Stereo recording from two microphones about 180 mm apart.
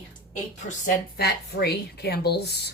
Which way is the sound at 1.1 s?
60° left (ahead or behind).